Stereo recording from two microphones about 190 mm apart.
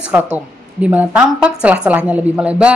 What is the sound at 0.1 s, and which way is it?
A woman's voice, 5° right (ahead or behind).